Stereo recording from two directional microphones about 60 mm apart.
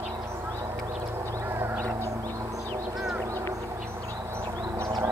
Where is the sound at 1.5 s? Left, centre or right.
Right.